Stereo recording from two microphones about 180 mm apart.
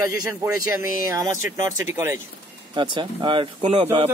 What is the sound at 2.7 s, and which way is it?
Speech, 25° right (ahead or behind).